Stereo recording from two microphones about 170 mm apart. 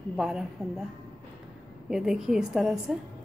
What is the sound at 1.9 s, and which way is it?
A woman's voice, 5° right (ahead or behind).